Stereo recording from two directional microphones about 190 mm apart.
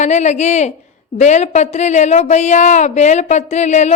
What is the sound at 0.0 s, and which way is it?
A woman's voice, 40° left (ahead or behind).